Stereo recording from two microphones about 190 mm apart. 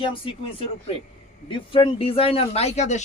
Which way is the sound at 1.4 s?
25° left (ahead or behind).